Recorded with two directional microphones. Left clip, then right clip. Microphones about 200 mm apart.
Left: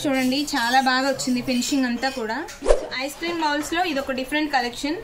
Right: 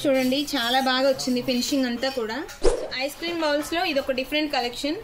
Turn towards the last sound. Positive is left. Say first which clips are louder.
# left 2 dB
turn(degrees=15)  # may be behind; listen again after turning